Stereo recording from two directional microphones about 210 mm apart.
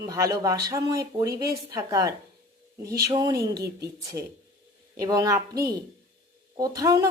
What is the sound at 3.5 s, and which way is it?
Speech, 50° right (ahead or behind).